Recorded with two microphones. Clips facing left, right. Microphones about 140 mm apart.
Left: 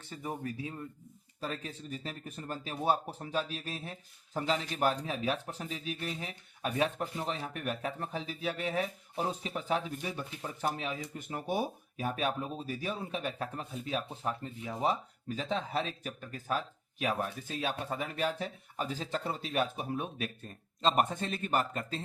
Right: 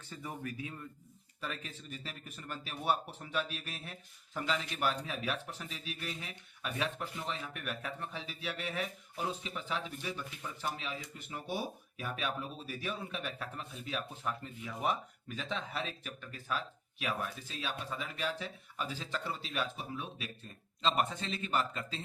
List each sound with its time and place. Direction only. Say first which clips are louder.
0.1 s speech: left 4 dB; 25° left (ahead or behind)
9.5 s speech: left 6 dB; 45° left (ahead or behind)
17.5 s speech: left 5 dB; 55° left (ahead or behind)